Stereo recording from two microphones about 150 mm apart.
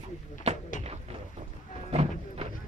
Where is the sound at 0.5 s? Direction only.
50° right (ahead or behind).